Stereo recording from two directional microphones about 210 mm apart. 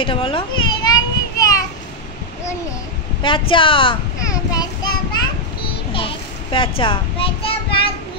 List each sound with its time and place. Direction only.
0.0 s children playing: 25° left (ahead or behind)
3.2 s child singing: 25° left (ahead or behind)